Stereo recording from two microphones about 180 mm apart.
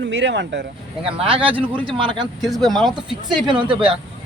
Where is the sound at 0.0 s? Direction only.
80° right.